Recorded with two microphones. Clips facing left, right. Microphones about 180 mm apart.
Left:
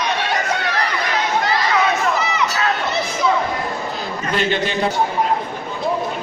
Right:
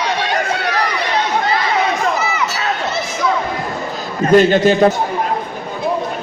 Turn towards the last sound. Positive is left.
turn(degrees=-45)  # may be behind; listen again after turning